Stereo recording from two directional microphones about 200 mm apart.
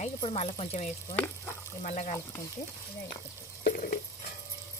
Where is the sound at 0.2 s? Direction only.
25° left (ahead or behind).